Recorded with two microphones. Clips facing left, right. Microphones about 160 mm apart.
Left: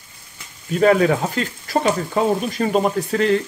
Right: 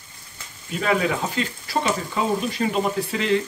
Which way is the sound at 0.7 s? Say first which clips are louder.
Left 7 dB; 45° left (ahead or behind).